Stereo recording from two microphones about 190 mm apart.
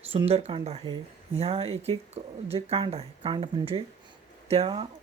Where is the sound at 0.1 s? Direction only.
30° right (ahead or behind).